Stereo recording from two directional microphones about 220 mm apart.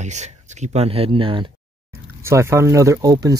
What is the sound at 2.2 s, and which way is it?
Speech, 10° right (ahead or behind).